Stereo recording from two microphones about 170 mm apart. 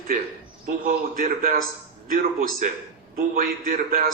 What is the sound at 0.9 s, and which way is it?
A man's voice, 60° right (ahead or behind).